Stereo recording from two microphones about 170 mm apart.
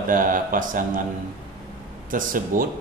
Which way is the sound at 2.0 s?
55° right (ahead or behind).